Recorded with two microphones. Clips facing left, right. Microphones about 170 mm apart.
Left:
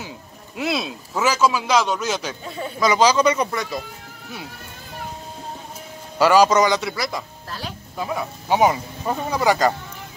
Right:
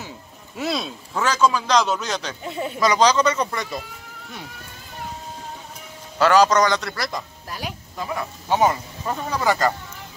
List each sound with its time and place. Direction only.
0.6 s a man's voice: centre (ahead or behind)
2.4 s speech: 20° right (ahead or behind)
2.8 s speech: 5° left (ahead or behind)
6.1 s speech: 10° left (ahead or behind)
7.4 s speech: 15° right (ahead or behind)
8.0 s speech: 10° left (ahead or behind)